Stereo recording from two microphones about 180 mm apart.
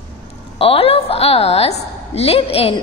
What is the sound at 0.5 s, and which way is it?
A woman's voice, 30° left (ahead or behind).